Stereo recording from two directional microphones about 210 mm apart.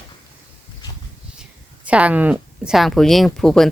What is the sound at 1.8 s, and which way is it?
Speech, 5° right (ahead or behind).